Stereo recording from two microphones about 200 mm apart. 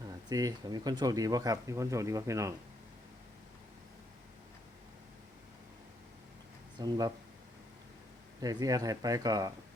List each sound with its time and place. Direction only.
0.3 s speech: 20° right (ahead or behind)
6.7 s speech: 20° right (ahead or behind)
8.4 s speech: 20° right (ahead or behind)